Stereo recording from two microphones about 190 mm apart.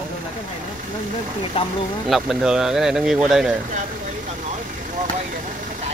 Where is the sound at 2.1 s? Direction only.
5° right (ahead or behind).